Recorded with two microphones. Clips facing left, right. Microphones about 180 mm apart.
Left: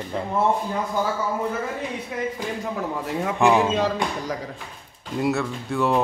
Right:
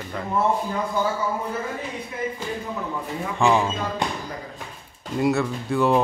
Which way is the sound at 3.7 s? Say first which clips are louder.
Left 4 dB; 85° left.